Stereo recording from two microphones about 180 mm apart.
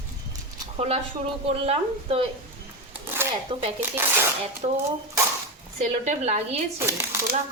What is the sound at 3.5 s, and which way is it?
Speech, 35° right (ahead or behind).